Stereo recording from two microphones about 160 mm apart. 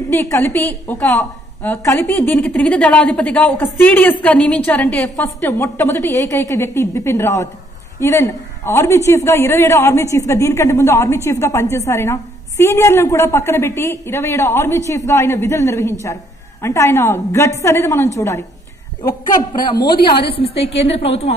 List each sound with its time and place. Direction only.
0.1 s a woman's voice: 15° left (ahead or behind)
19.5 s a woman's voice: 25° left (ahead or behind)